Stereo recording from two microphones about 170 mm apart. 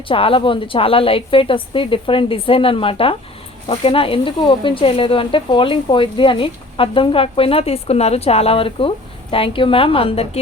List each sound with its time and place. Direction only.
0.1 s speech: 30° left (ahead or behind)